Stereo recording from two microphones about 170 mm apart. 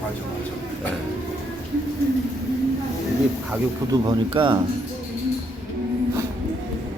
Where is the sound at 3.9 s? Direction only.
25° right (ahead or behind).